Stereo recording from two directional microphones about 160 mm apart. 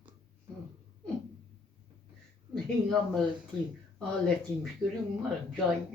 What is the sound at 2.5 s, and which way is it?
Speech, 5° left (ahead or behind).